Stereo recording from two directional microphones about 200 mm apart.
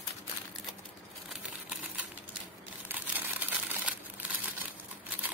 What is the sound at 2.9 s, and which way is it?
Crumpling, 10° right (ahead or behind).